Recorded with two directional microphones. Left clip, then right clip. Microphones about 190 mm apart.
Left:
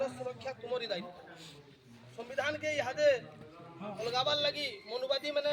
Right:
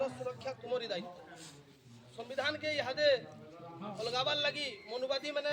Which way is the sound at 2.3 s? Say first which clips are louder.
Left 1 dB; 15° left (ahead or behind).